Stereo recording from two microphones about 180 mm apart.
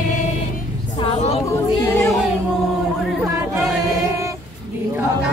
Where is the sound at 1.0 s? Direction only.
35° left (ahead or behind).